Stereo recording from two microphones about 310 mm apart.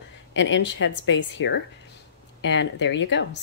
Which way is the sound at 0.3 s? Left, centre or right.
Left.